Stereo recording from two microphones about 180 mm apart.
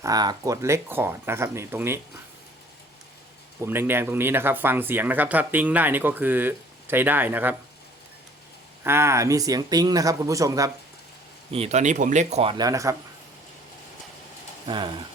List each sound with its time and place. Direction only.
0.0 s speech: 20° right (ahead or behind)
3.7 s speech: 10° right (ahead or behind)
8.8 s speech: 15° right (ahead or behind)
11.5 s speech: 35° right (ahead or behind); by 13.0 s 15° right (ahead or behind)
14.7 s speech: 25° right (ahead or behind)